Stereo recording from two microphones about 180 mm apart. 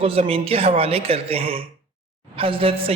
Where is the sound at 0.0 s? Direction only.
35° right (ahead or behind).